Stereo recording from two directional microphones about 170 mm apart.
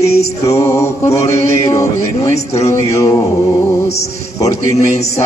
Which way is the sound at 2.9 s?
20° left (ahead or behind).